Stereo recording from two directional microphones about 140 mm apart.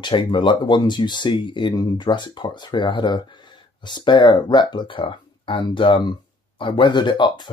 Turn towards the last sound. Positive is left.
turn(degrees=35)  # may be behind; listen again after turning